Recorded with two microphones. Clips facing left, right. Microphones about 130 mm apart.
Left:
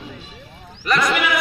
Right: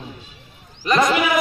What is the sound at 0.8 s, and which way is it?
Sheep, 25° right (ahead or behind).